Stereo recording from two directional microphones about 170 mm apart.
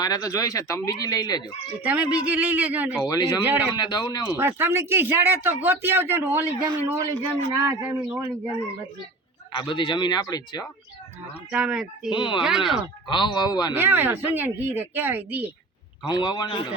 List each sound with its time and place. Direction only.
0.0 s speech: 20° left (ahead or behind)
1.8 s speech: 10° right (ahead or behind)
3.0 s speech: 20° left (ahead or behind)
3.4 s speech: 10° right (ahead or behind)
3.8 s speech: 25° left (ahead or behind)
4.4 s speech: 15° right (ahead or behind)
7.6 s speech: 10° right (ahead or behind)
9.5 s speech: 30° left (ahead or behind)
11.5 s speech: 5° right (ahead or behind)
12.1 s speech: 30° left (ahead or behind)
12.4 s speech: 5° right (ahead or behind)
12.7 s speech: 30° left (ahead or behind)
13.7 s speech: 10° right (ahead or behind)
16.0 s speech: 25° left (ahead or behind)